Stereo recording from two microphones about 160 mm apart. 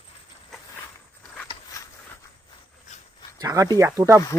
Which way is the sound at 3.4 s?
20° right (ahead or behind).